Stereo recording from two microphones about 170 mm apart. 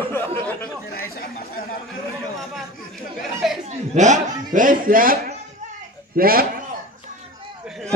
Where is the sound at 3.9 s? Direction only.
45° right (ahead or behind).